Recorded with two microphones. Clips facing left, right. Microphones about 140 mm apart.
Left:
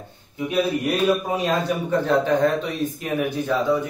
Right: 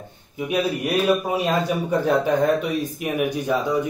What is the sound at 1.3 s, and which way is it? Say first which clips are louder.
Speech: right 1 dB; 10° right (ahead or behind).